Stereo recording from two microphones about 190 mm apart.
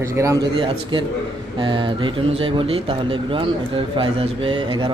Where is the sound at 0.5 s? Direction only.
25° right (ahead or behind).